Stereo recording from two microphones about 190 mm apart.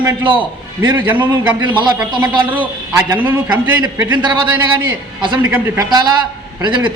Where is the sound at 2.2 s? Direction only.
25° right (ahead or behind).